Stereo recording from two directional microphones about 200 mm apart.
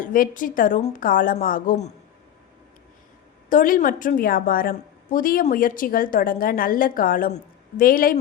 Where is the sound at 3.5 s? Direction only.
40° left (ahead or behind).